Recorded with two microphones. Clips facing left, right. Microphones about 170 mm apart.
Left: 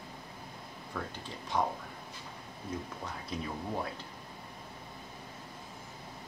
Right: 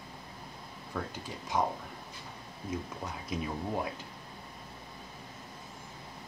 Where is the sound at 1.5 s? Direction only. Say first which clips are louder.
Right 1 dB; 20° right (ahead or behind).